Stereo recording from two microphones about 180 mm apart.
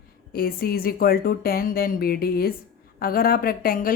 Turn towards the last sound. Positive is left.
turn(degrees=55)  # may be behind; listen again after turning